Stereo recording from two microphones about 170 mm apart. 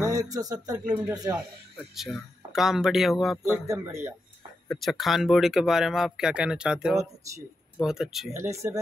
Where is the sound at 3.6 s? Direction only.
20° right (ahead or behind).